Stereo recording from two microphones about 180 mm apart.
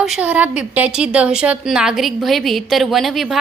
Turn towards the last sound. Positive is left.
turn(degrees=0)  # may be behind; listen again after turning